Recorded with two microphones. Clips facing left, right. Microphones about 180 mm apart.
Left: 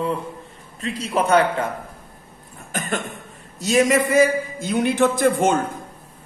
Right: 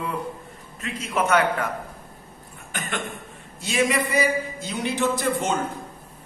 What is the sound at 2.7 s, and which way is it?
Cough, 40° left (ahead or behind).